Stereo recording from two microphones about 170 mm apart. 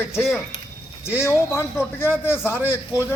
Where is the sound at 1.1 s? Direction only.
15° left (ahead or behind).